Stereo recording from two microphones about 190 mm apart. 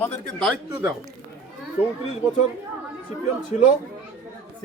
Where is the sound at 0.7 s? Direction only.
10° right (ahead or behind).